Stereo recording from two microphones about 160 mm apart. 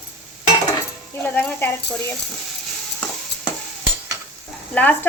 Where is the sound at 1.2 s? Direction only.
10° left (ahead or behind).